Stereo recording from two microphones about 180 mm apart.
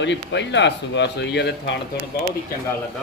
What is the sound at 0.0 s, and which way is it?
Speech, 80° left.